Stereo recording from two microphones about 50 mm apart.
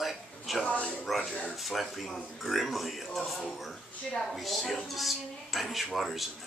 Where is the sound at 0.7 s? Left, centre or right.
Left.